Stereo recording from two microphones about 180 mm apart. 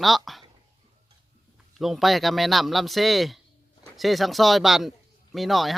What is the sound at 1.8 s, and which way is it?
Speech, centre (ahead or behind).